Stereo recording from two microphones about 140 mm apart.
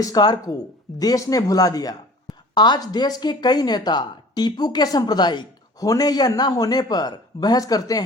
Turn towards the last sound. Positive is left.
turn(degrees=25)  # may be behind; listen again after turning